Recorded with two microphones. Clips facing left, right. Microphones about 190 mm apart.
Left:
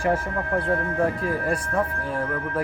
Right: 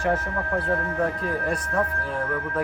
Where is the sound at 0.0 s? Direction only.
10° left (ahead or behind).